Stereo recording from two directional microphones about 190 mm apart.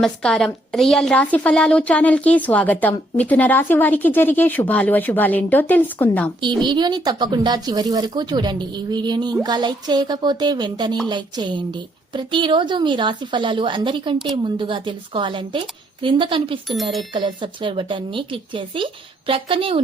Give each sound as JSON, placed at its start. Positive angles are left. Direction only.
{"t": 0.0, "sound": "a woman's voice", "side_deg": 5}
{"t": 6.6, "sound": "speech", "side_deg": -25}